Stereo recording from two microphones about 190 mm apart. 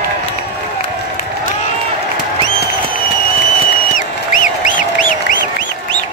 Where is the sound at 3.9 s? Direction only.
45° left (ahead or behind).